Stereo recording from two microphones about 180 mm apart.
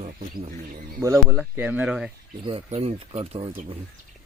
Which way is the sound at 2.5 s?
30° right (ahead or behind).